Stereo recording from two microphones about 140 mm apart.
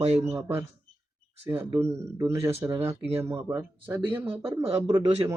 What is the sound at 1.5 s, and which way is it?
Speech, 40° right (ahead or behind).